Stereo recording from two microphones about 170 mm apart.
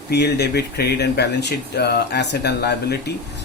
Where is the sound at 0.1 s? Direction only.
75° left (ahead or behind).